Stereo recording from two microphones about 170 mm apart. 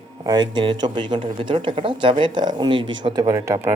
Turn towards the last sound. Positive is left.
turn(degrees=-20)  # may be behind; listen again after turning